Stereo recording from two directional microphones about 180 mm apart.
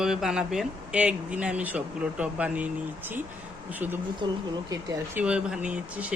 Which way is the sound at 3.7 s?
10° right (ahead or behind).